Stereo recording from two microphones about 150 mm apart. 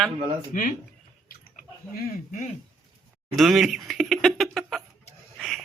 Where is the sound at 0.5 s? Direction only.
65° left (ahead or behind).